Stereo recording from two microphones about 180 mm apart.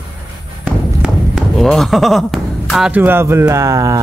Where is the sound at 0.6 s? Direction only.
5° right (ahead or behind).